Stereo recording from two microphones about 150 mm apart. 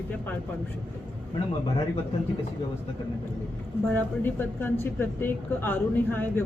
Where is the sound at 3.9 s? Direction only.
15° left (ahead or behind).